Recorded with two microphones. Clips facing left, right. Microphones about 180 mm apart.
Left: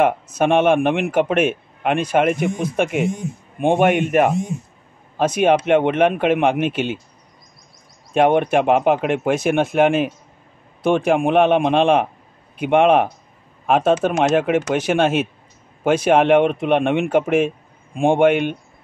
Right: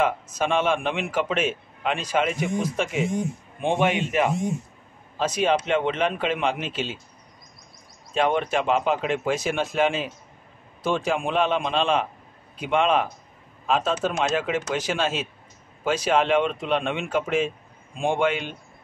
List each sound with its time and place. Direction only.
0.0 s a man's voice: 60° left (ahead or behind)
8.1 s a man's voice: 60° left (ahead or behind)